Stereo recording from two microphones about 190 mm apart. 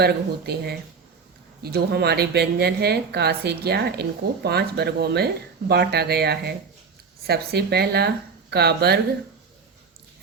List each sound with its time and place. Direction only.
0.0 s a woman's voice: 60° right (ahead or behind)